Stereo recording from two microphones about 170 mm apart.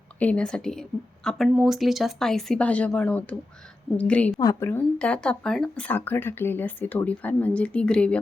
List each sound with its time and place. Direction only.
0.2 s speech: 5° left (ahead or behind)
4.4 s a woman's voice: 20° left (ahead or behind)
4.9 s speech: 5° left (ahead or behind)